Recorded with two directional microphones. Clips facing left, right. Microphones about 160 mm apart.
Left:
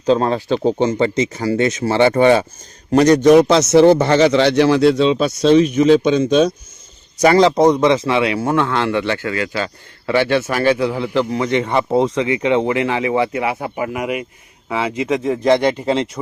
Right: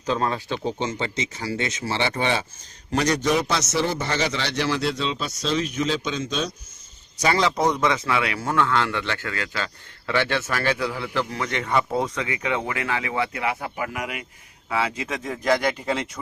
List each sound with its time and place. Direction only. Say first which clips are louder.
0.0 s speech: left 9 dB; 35° left (ahead or behind)
0.5 s speech: left 10 dB; 55° left (ahead or behind)
3.2 s speech: left 13 dB; 55° left (ahead or behind)
7.2 s speech: left 10 dB; 45° left (ahead or behind); by 16.0 s 30° left (ahead or behind)